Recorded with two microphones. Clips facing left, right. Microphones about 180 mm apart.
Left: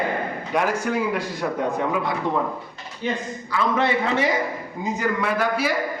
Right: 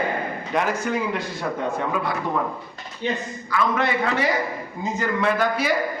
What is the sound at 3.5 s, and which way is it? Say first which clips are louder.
Speech: left 1 dB; 25° left (ahead or behind).